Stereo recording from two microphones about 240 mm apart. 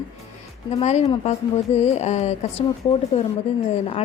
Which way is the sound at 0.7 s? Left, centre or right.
Left.